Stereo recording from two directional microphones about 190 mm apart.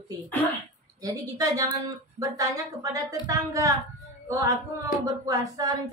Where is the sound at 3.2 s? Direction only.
20° right (ahead or behind).